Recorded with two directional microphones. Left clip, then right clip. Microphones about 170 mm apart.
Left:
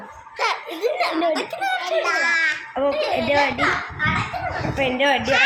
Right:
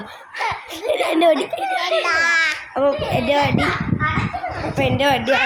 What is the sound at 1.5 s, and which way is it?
Speech, 40° left (ahead or behind).